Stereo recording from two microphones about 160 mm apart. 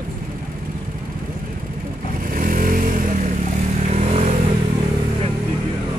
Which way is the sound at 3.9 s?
45° right (ahead or behind).